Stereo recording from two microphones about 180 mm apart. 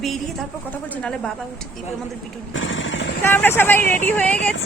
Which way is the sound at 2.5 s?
90° left.